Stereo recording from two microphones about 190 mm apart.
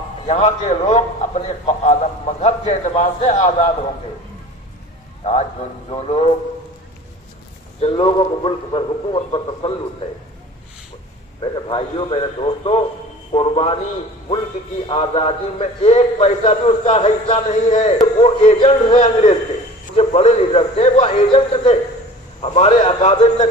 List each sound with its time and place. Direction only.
0.3 s a man's voice: 35° left (ahead or behind)
5.2 s a man's voice: 35° left (ahead or behind)
7.8 s a man's voice: 30° left (ahead or behind)
11.5 s a man's voice: 25° left (ahead or behind)
14.8 s a man's voice: 30° left (ahead or behind)